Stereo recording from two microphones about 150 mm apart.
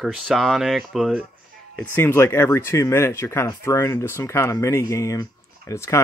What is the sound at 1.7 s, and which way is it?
Speech, 15° left (ahead or behind).